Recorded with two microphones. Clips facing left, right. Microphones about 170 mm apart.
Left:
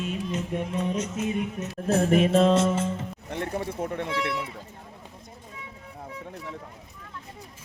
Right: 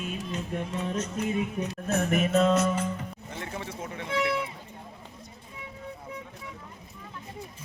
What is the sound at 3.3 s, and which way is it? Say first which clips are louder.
Speech: left 8 dB; 55° left (ahead or behind).